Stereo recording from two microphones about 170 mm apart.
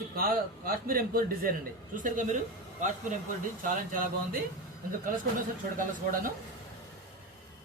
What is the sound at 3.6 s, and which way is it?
Speech, 55° right (ahead or behind).